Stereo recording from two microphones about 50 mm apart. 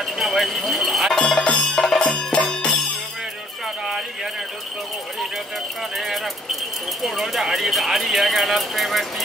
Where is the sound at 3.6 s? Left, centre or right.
Centre.